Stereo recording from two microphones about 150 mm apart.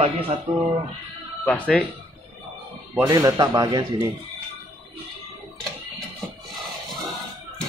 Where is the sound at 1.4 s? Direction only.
10° left (ahead or behind).